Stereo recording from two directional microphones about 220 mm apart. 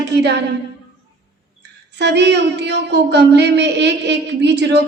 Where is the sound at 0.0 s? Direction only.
50° right (ahead or behind).